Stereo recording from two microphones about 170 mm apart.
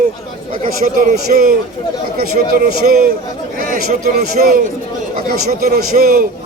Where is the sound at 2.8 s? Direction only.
60° right (ahead or behind).